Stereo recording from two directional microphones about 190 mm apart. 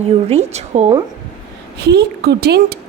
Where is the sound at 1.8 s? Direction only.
60° right (ahead or behind).